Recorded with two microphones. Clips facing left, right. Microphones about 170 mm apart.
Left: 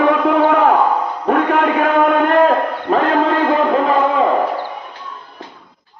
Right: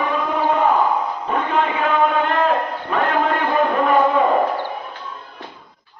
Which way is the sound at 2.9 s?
35° left (ahead or behind).